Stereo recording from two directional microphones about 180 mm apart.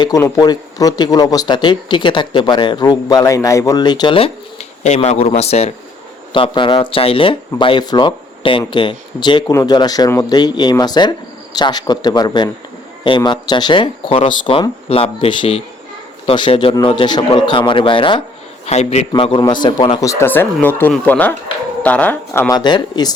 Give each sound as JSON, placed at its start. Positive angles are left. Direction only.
{"t": 0.0, "sound": "a man's voice", "side_deg": 20}